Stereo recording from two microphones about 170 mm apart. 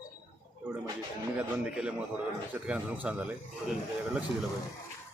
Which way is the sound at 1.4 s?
5° right (ahead or behind).